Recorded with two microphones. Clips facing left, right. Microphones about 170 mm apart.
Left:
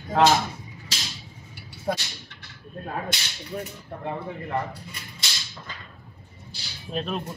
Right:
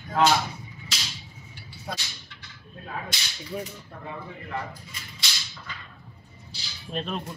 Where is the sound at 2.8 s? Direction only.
45° left (ahead or behind).